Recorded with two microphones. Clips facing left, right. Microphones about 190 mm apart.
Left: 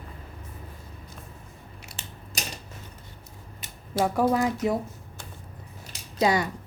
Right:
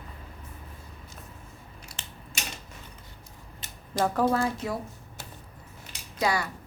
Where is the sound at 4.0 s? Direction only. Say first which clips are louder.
Left 2 dB; 10° left (ahead or behind).